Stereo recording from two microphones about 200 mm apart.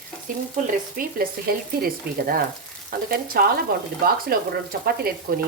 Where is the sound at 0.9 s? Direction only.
50° right (ahead or behind).